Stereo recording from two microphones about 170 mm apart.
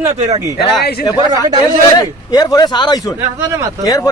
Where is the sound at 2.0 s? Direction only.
20° left (ahead or behind).